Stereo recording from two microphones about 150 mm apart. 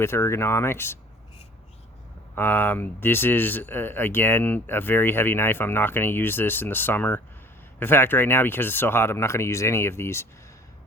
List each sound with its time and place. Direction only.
0.0 s speech: 15° left (ahead or behind)
2.3 s speech: 15° left (ahead or behind)